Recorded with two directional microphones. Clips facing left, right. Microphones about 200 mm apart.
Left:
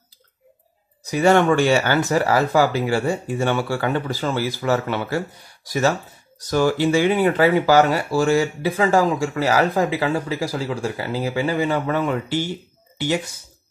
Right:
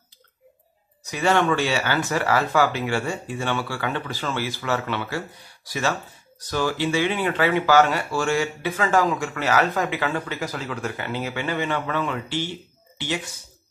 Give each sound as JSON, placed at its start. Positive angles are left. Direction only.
{"t": 1.0, "sound": "speech", "side_deg": 40}